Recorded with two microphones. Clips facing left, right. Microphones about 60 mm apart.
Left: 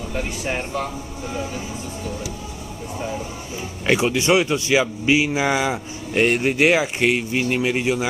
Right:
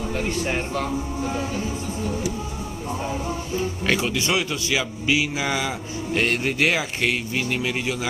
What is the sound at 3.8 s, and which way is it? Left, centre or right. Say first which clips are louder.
A man's voice: left 7 dB; centre.